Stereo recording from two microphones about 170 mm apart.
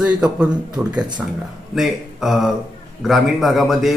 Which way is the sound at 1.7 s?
Centre (ahead or behind).